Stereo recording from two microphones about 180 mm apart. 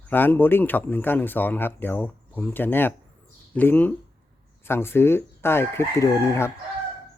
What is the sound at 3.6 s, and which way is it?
Chicken, 10° left (ahead or behind).